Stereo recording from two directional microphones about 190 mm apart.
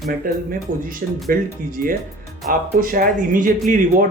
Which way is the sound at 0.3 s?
45° right (ahead or behind).